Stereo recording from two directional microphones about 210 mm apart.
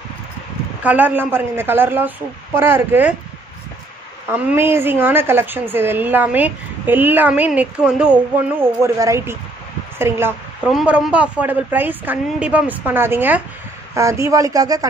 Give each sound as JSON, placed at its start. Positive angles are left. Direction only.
{"t": 0.8, "sound": "a woman's voice", "side_deg": -10}
{"t": 4.3, "sound": "a woman's voice", "side_deg": -10}